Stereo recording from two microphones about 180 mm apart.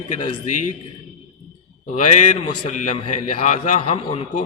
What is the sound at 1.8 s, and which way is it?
A man's voice, 45° left (ahead or behind).